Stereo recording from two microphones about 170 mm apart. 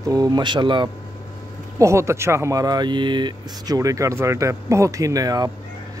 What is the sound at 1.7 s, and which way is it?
Speech, 15° right (ahead or behind).